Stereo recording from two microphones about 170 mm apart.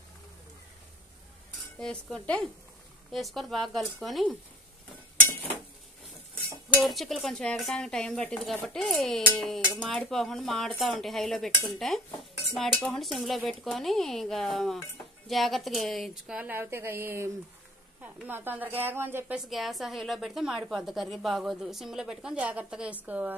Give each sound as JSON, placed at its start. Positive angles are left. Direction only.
{"t": 1.8, "sound": "speech", "side_deg": 5}
{"t": 6.8, "sound": "a woman's voice", "side_deg": 0}